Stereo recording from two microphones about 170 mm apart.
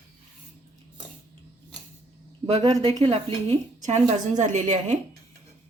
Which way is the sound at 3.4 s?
40° right (ahead or behind).